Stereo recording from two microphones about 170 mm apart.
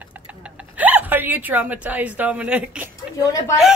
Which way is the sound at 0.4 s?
10° right (ahead or behind).